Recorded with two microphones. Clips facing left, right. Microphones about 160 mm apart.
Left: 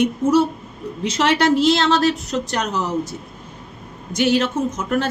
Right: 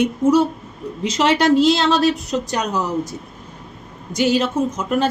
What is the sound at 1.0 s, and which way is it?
A woman's voice, 15° right (ahead or behind).